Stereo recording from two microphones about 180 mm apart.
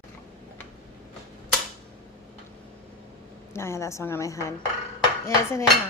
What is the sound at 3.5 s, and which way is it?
Speech, 15° left (ahead or behind).